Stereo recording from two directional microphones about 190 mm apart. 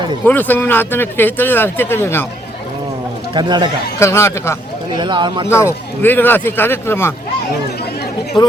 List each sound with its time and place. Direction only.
0.3 s speech: 10° left (ahead or behind)
3.3 s a man's voice: 25° right (ahead or behind)
4.0 s speech: 15° left (ahead or behind)
4.9 s a man's voice: 25° right (ahead or behind)
5.5 s speech: 15° left (ahead or behind)
8.4 s speech: 25° left (ahead or behind)